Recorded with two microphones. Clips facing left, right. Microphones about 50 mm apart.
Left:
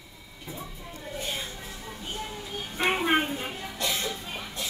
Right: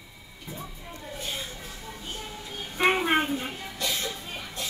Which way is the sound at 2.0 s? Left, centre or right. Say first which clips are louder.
Left 4 dB; centre.